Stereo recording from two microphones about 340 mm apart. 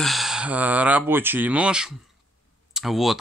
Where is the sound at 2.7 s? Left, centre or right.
Centre.